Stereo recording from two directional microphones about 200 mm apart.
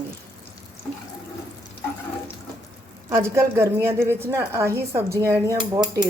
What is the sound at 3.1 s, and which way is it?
A woman's voice, 15° right (ahead or behind).